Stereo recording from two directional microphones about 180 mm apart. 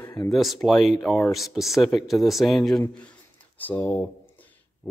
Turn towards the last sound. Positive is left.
turn(degrees=10)  # may be behind; listen again after turning